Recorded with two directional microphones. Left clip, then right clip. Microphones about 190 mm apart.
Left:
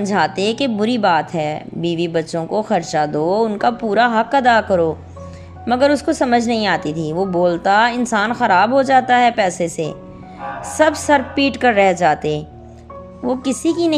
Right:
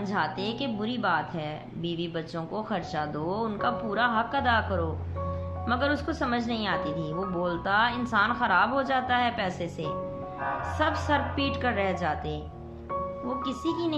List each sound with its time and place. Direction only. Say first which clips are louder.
0.0 s a woman's voice: left 12 dB; 40° left (ahead or behind)